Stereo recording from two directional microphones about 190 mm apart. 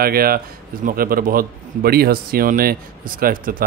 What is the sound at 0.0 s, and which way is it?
A man's voice, 50° right (ahead or behind).